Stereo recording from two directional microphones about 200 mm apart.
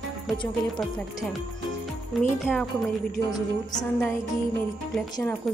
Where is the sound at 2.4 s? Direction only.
Centre (ahead or behind).